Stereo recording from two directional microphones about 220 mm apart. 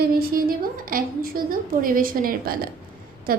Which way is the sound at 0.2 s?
40° right (ahead or behind).